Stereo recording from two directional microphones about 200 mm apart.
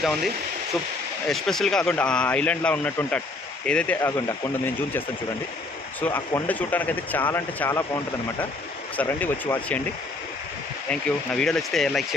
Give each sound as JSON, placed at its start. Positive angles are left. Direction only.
{"t": 0.0, "sound": "speech", "side_deg": 0}
{"t": 1.3, "sound": "speech", "side_deg": 0}
{"t": 10.8, "sound": "speech", "side_deg": 5}